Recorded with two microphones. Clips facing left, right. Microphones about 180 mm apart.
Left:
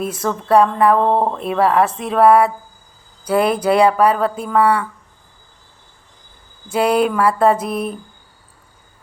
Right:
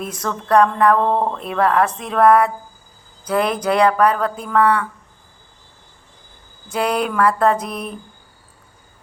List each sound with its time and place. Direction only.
0.0 s mantra: 5° left (ahead or behind)
0.4 s speech: 5° left (ahead or behind)
1.0 s speech: 20° left (ahead or behind)
1.4 s speech: 5° left (ahead or behind)
6.7 s mantra: 5° left (ahead or behind)